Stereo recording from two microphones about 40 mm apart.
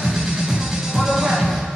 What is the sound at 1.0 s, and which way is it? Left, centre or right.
Music, centre.